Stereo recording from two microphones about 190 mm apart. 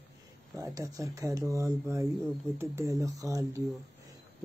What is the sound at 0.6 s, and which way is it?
Speech, 20° right (ahead or behind).